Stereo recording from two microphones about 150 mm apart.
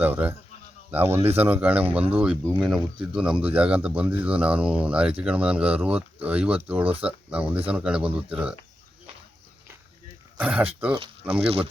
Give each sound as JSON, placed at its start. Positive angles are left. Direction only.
{"t": 0.0, "sound": "speech", "side_deg": -10}
{"t": 10.4, "sound": "speech", "side_deg": -10}
{"t": 10.9, "sound": "speech", "side_deg": -35}